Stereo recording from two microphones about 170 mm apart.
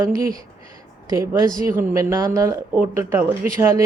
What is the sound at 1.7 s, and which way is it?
Speech, 15° right (ahead or behind).